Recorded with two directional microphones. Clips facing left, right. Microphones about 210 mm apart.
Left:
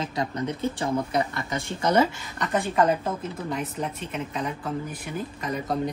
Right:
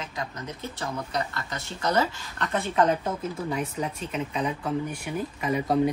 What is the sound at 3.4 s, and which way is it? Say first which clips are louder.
Speech: left 1 dB; centre (ahead or behind).